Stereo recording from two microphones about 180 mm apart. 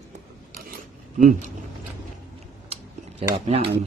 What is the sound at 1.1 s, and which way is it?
Speech, 45° right (ahead or behind).